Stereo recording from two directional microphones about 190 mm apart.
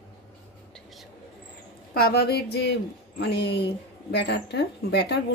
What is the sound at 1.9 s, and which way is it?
Speech, 55° left (ahead or behind).